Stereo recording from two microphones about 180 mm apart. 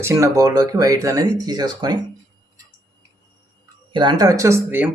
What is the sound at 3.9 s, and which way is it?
Speech, 25° right (ahead or behind).